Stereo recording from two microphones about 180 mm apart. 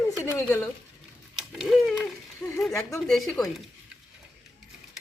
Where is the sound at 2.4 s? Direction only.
15° left (ahead or behind).